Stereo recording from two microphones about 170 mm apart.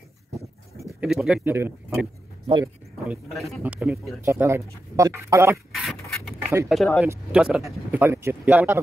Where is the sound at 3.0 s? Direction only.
5° right (ahead or behind).